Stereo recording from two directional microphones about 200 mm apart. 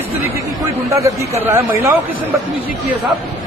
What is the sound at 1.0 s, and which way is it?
Speech, 15° right (ahead or behind).